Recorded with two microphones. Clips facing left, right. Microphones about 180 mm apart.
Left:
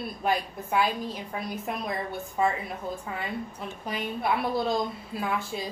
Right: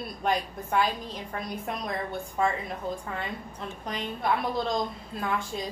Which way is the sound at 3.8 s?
5° left (ahead or behind).